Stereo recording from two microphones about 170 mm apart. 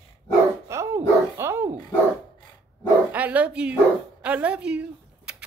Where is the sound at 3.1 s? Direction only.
10° right (ahead or behind).